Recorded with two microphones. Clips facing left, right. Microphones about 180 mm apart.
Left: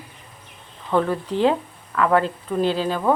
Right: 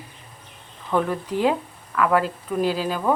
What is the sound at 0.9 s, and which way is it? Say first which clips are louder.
A woman's voice: left 2 dB; 10° right (ahead or behind).